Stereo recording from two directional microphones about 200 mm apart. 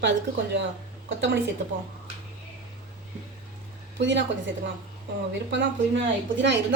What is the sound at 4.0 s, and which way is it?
A woman's voice, 65° right (ahead or behind).